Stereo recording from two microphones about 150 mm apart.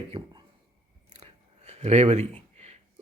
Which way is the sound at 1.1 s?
45° right (ahead or behind).